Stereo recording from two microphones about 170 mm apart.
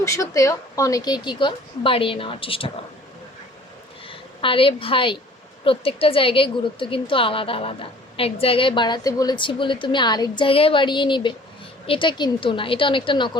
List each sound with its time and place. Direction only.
0.0 s a woman's voice: 15° left (ahead or behind)
4.1 s a woman's voice: 30° left (ahead or behind)